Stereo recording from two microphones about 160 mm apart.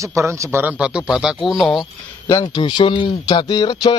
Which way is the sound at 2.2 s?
25° left (ahead or behind).